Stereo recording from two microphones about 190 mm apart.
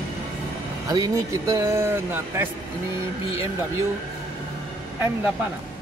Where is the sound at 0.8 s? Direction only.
20° right (ahead or behind).